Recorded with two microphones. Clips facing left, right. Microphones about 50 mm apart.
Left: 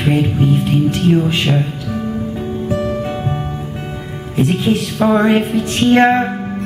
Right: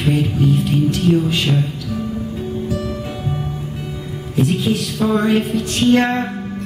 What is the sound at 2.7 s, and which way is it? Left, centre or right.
Music, left.